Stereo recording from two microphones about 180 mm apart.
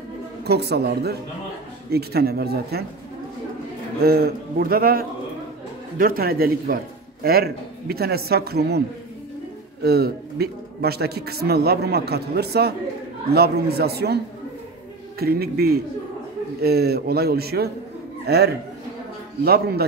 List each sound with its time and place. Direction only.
0.5 s a man's voice: 65° right (ahead or behind)
4.0 s a man's voice: 60° right (ahead or behind)
9.8 s a man's voice: 60° right (ahead or behind)